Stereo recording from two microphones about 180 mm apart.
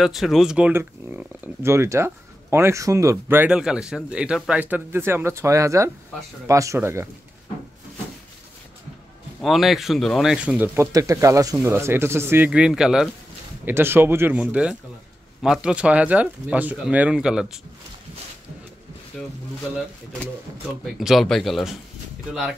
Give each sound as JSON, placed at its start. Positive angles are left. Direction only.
{"t": 0.0, "sound": "speech", "side_deg": 0}
{"t": 9.4, "sound": "speech", "side_deg": 0}
{"t": 19.1, "sound": "speech", "side_deg": 0}
{"t": 20.8, "sound": "speech", "side_deg": 0}